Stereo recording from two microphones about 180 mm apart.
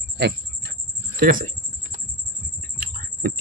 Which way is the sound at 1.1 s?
50° right (ahead or behind).